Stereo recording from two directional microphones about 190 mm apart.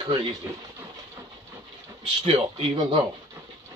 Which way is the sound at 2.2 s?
30° right (ahead or behind).